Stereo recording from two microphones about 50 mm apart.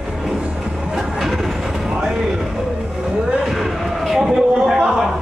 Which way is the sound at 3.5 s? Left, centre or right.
Centre.